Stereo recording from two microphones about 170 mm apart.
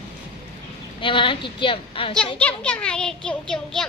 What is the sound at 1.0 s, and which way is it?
A woman's voice, 30° left (ahead or behind).